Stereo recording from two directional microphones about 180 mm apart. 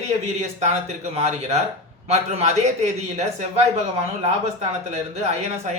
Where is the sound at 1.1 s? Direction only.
35° right (ahead or behind).